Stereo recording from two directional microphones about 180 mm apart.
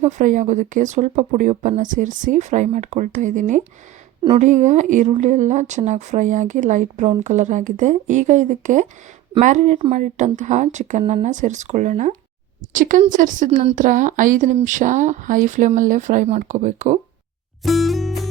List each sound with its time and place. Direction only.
0.0 s speech: 45° right (ahead or behind)
17.6 s music: centre (ahead or behind)